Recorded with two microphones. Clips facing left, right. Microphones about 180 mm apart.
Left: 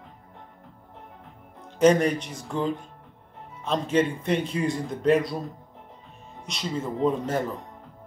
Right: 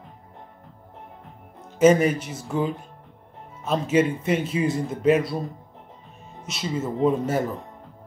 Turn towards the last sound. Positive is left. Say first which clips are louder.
# right 3 dB
turn(degrees=-10)  # may be behind; listen again after turning